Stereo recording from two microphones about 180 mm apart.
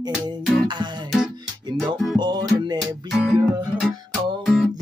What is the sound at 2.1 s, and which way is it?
Music, 25° right (ahead or behind).